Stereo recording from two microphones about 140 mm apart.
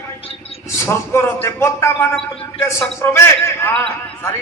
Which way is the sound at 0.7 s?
20° left (ahead or behind).